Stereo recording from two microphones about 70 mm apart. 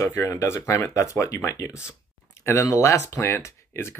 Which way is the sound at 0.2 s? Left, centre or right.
Left.